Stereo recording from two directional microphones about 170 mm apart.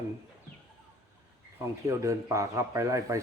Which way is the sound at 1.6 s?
20° right (ahead or behind).